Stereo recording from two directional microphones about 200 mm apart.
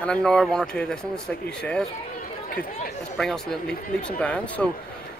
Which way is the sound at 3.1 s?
Centre (ahead or behind).